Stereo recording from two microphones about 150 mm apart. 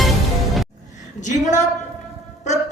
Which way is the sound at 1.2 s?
55° left (ahead or behind).